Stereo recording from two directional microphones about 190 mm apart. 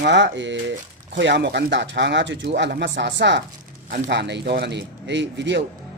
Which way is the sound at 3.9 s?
45° right (ahead or behind).